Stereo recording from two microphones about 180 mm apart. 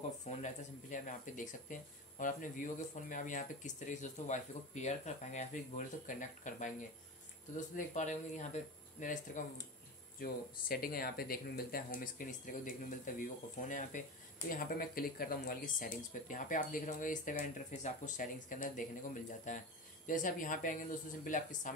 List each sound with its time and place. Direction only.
0.3 s speech: 45° left (ahead or behind)